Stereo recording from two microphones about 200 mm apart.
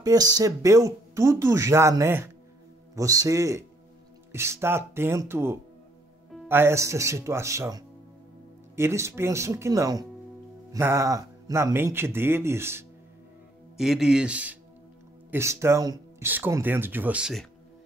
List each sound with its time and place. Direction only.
0.0 s speech: 20° right (ahead or behind)
13.7 s speech: centre (ahead or behind)